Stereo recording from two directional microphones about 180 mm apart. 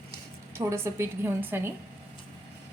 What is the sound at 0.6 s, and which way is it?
A woman's voice, 15° right (ahead or behind).